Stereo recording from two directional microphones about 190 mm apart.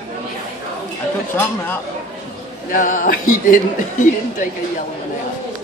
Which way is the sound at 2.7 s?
45° left (ahead or behind).